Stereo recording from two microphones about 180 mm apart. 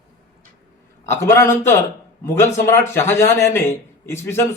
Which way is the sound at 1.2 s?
15° left (ahead or behind).